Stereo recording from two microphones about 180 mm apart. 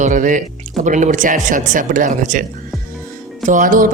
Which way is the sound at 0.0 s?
45° right (ahead or behind).